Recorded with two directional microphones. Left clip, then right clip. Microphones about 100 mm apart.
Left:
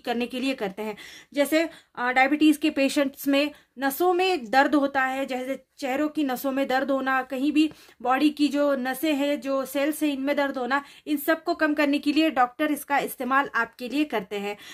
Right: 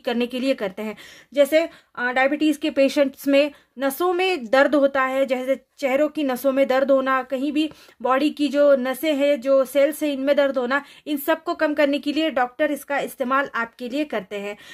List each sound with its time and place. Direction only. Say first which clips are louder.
0.0 s a woman's voice: right 4 dB; 40° right (ahead or behind); by 14.6 s 20° right (ahead or behind)